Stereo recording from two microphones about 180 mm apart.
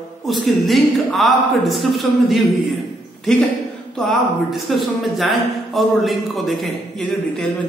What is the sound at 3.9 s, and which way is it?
Speech, centre (ahead or behind).